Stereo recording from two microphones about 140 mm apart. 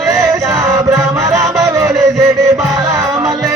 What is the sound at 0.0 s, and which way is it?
Music, 25° right (ahead or behind).